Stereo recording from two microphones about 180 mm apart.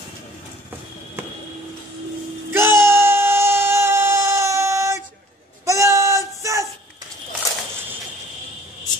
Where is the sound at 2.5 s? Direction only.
15° right (ahead or behind).